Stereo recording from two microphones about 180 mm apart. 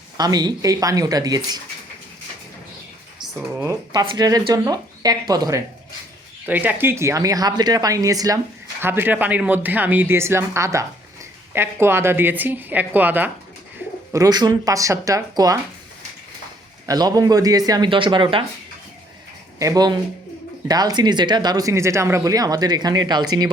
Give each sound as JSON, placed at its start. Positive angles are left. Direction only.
{"t": 0.2, "sound": "speech", "side_deg": -20}
{"t": 3.2, "sound": "a sound", "side_deg": -5}
{"t": 3.7, "sound": "speech", "side_deg": -25}
{"t": 14.1, "sound": "speech", "side_deg": -20}
{"t": 16.8, "sound": "speech", "side_deg": -20}
{"t": 19.5, "sound": "speech", "side_deg": -20}